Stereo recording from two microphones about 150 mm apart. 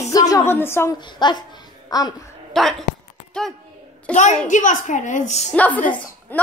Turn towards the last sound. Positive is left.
turn(degrees=10)  # may be behind; listen again after turning